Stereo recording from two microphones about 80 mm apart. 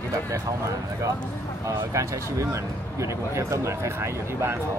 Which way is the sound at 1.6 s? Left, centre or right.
Right.